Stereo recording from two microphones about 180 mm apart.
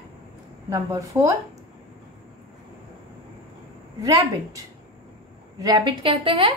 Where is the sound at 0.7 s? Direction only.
15° right (ahead or behind).